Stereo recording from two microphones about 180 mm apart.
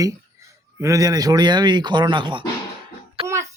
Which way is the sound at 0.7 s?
15° right (ahead or behind).